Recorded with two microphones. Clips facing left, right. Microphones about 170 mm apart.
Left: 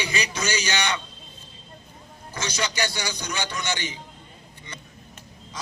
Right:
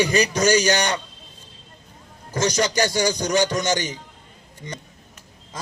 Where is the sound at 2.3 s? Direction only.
45° right (ahead or behind).